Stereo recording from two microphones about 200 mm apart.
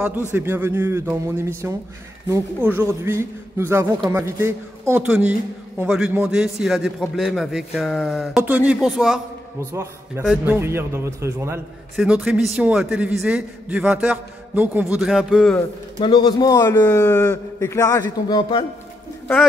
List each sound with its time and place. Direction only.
0.3 s a man's voice: 10° right (ahead or behind)
9.6 s a man's voice: 15° right (ahead or behind)
16.0 s a man's voice: 25° left (ahead or behind)